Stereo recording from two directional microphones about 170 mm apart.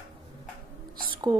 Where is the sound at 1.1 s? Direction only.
25° right (ahead or behind).